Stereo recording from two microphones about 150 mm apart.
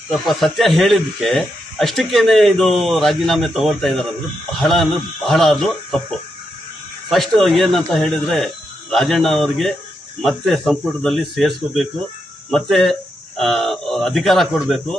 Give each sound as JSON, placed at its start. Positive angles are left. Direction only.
{"t": 0.1, "sound": "speech", "side_deg": 0}